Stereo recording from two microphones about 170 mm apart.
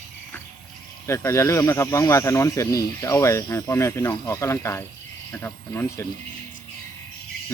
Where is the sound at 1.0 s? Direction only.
15° left (ahead or behind).